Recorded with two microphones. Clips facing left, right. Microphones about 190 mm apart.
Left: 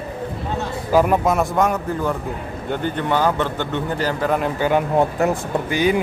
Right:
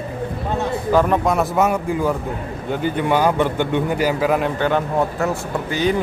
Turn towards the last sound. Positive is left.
turn(degrees=15)  # may be behind; listen again after turning